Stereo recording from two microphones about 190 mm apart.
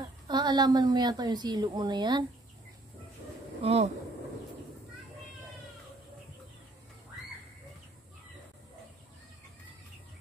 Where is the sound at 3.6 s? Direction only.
35° right (ahead or behind).